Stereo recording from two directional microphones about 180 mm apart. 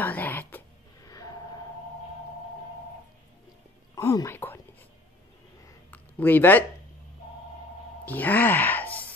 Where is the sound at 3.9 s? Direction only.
15° left (ahead or behind).